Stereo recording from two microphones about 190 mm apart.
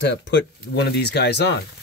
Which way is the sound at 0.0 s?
70° left (ahead or behind).